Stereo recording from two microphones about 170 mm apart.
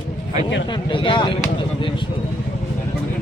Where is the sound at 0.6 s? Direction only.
30° left (ahead or behind).